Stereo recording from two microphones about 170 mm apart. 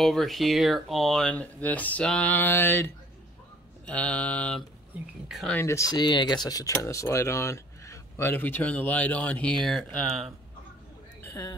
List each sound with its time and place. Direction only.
0.0 s speech: centre (ahead or behind)
5.6 s speech: 15° left (ahead or behind)